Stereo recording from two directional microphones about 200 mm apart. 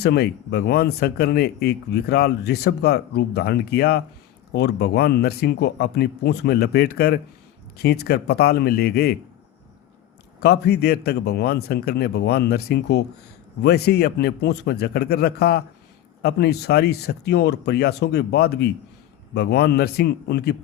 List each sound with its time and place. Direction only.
0.0 s speech: 55° left (ahead or behind)
10.4 s speech: 55° left (ahead or behind)